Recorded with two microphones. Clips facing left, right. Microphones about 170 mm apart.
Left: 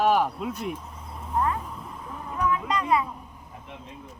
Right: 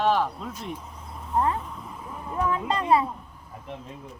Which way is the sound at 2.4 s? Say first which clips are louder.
Even; 30° right (ahead or behind).